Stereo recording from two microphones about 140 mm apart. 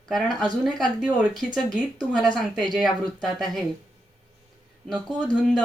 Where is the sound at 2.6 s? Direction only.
30° right (ahead or behind).